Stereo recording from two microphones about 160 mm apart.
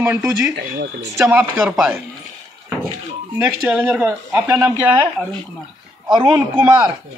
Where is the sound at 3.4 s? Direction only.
10° right (ahead or behind).